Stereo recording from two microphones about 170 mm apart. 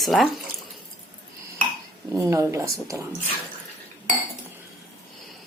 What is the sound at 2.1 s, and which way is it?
Speech, 20° right (ahead or behind).